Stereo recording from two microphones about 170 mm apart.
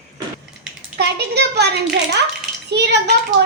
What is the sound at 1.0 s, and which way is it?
A child's voice, 75° right (ahead or behind).